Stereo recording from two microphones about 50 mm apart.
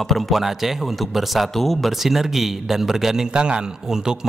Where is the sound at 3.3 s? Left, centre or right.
Centre.